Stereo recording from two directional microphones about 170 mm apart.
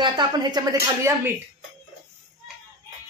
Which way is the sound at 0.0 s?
25° right (ahead or behind).